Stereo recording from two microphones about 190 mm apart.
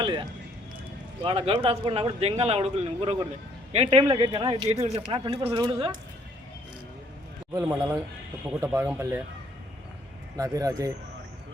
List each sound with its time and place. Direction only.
0.0 s speech: 25° right (ahead or behind)
7.5 s speech: 15° right (ahead or behind)
10.3 s speech: 20° right (ahead or behind)